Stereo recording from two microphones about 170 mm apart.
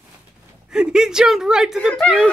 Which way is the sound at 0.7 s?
5° right (ahead or behind).